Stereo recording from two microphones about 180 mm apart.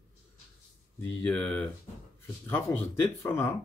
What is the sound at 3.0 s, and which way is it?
Speech, 15° left (ahead or behind).